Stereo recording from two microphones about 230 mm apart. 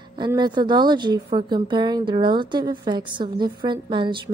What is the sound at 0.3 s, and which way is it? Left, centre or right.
A woman's voice, centre.